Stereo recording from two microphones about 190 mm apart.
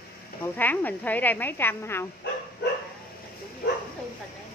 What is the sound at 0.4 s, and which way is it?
A woman's voice, 10° left (ahead or behind).